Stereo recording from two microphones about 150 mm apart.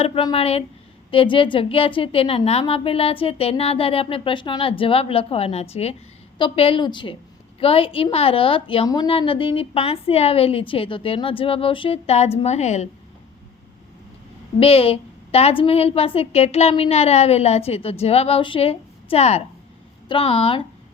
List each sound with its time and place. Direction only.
0.0 s a woman's voice: 35° left (ahead or behind); by 12.9 s 50° left (ahead or behind)
14.6 s a woman's voice: 40° left (ahead or behind)